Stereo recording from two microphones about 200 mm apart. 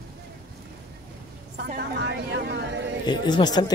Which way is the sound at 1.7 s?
55° right (ahead or behind).